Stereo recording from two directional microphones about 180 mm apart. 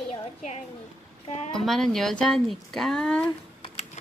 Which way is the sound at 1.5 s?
Centre (ahead or behind).